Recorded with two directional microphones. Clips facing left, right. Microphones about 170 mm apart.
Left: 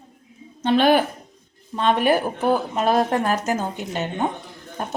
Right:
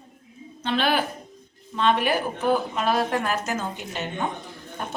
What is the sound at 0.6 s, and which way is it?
Speech, 45° left (ahead or behind).